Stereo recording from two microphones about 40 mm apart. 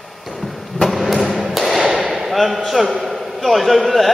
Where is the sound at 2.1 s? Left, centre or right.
Centre.